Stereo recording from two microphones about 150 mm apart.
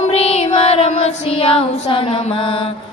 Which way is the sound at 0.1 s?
45° left (ahead or behind).